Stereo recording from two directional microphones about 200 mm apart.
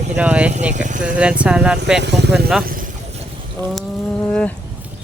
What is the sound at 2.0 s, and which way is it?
Speech, 60° right (ahead or behind).